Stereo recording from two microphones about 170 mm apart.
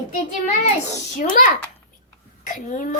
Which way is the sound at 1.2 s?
50° left (ahead or behind).